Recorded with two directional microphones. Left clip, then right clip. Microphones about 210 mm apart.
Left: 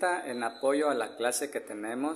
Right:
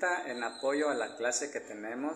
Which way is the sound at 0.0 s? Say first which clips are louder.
Left 2 dB; 35° left (ahead or behind).